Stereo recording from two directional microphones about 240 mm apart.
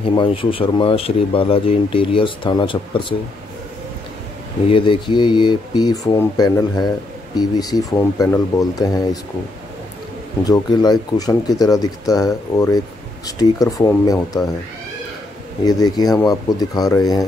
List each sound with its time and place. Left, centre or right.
0.0 s speech: left
4.6 s speech: left
10.4 s speech: centre
15.6 s speech: centre